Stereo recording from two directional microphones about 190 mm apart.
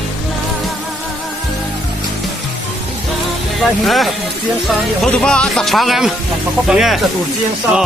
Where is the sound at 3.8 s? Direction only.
Centre (ahead or behind).